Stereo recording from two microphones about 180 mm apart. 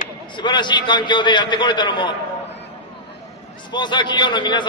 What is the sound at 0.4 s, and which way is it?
A man's voice, 25° left (ahead or behind).